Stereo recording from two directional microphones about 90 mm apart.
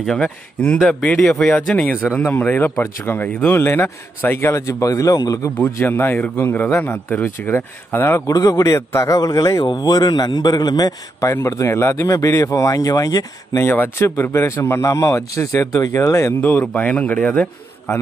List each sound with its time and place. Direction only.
0.0 s a man's voice: 5° left (ahead or behind)
1.8 s speech: 20° left (ahead or behind); by 5.5 s 45° left (ahead or behind)
5.8 s speech: 25° left (ahead or behind)
8.3 s a man's voice: 40° left (ahead or behind)
11.1 s speech: 35° left (ahead or behind)
13.6 s speech: 25° left (ahead or behind)
16.4 s a man's voice: 20° left (ahead or behind)